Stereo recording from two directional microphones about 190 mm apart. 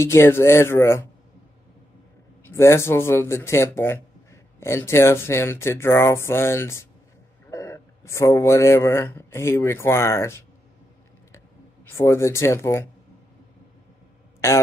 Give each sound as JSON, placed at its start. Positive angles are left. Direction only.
{"t": 0.0, "sound": "speech", "side_deg": 15}
{"t": 2.4, "sound": "speech", "side_deg": 15}
{"t": 11.9, "sound": "speech", "side_deg": 15}